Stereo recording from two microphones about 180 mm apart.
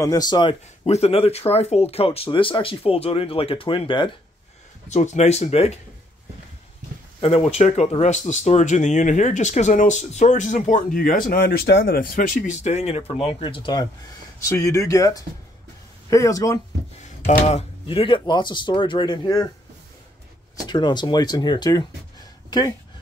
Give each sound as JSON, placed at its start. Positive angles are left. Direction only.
{"t": 0.0, "sound": "speech", "side_deg": 20}
{"t": 4.8, "sound": "speech", "side_deg": 40}
{"t": 7.2, "sound": "speech", "side_deg": 30}
{"t": 17.3, "sound": "speech", "side_deg": 35}
{"t": 20.5, "sound": "speech", "side_deg": 25}